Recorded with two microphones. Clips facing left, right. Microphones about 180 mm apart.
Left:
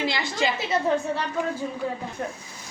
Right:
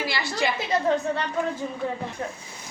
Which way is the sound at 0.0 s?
20° left (ahead or behind).